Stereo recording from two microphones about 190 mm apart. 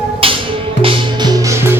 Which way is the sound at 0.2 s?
30° right (ahead or behind).